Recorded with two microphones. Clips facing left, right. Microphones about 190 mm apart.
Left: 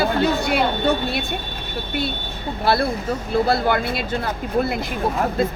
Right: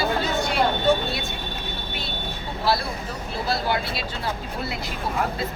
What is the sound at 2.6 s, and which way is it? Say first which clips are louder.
Speech: left 5 dB; 60° left (ahead or behind).